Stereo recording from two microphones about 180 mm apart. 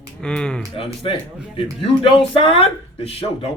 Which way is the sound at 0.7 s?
30° left (ahead or behind).